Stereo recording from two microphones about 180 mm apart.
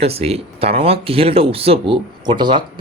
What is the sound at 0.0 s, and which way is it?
Speech, 35° right (ahead or behind).